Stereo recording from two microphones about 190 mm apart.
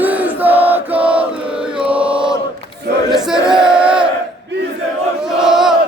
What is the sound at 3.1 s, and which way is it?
Battle cry, 5° right (ahead or behind).